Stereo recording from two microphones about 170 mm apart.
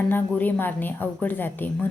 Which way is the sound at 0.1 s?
10° left (ahead or behind).